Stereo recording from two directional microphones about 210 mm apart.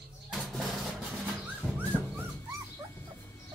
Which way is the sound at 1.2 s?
10° right (ahead or behind).